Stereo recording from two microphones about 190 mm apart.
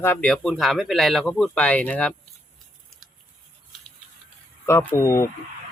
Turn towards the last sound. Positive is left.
turn(degrees=15)  # may be behind; listen again after turning